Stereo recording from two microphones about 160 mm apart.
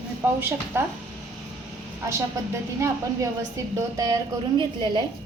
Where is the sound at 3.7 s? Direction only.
20° right (ahead or behind).